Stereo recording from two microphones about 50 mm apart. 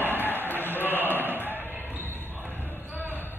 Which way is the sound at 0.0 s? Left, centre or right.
Right.